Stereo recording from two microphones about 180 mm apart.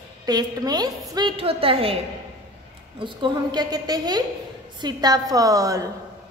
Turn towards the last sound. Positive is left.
turn(degrees=-20)  # may be behind; listen again after turning